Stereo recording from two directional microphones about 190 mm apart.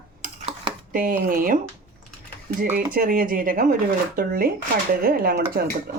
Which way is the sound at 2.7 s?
50° right (ahead or behind).